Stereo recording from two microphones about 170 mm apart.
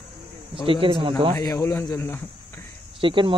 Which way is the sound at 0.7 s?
30° right (ahead or behind).